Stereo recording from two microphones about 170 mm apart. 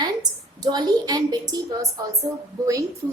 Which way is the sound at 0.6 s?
25° right (ahead or behind).